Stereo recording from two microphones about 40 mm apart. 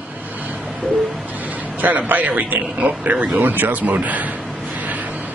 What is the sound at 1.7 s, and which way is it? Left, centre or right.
Speech, right.